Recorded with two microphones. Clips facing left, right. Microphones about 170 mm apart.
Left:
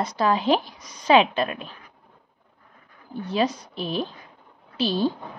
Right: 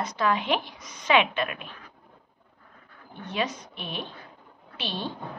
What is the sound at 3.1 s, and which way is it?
Speech, 35° left (ahead or behind).